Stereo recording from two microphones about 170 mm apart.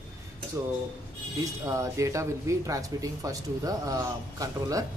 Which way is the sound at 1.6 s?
20° right (ahead or behind).